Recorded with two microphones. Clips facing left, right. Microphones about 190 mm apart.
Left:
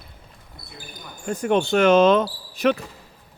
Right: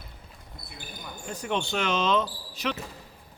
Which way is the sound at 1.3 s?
50° left (ahead or behind).